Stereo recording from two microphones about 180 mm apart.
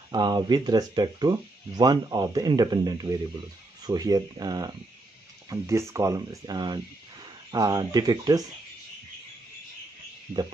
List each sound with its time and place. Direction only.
0.1 s speech: 25° right (ahead or behind)